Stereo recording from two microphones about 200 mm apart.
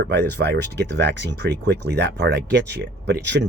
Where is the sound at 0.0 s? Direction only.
60° right (ahead or behind).